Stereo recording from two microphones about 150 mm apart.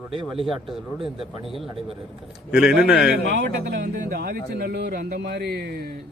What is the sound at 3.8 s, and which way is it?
Speech, 60° right (ahead or behind).